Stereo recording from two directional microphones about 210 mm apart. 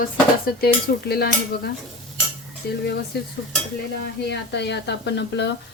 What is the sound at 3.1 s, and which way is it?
Speech, 50° left (ahead or behind).